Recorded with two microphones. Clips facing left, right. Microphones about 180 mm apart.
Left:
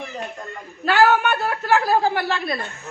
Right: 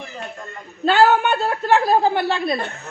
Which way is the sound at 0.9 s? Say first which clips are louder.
Right 2 dB; 20° right (ahead or behind).